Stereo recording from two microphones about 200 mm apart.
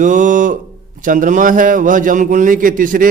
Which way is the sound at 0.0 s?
40° right (ahead or behind).